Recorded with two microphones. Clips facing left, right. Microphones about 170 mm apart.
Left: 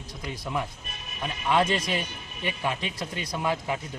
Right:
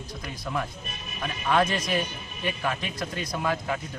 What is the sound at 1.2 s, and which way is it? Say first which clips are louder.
A man's voice: even; 20° left (ahead or behind).